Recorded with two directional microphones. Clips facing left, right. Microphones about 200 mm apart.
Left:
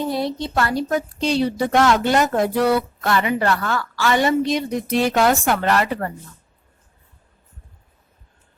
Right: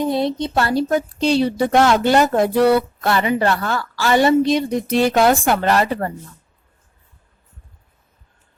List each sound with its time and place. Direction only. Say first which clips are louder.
0.0 s a woman's voice: right 4 dB; 20° right (ahead or behind)